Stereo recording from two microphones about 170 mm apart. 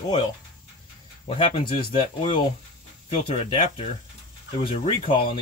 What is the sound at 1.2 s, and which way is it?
Speech, 35° left (ahead or behind).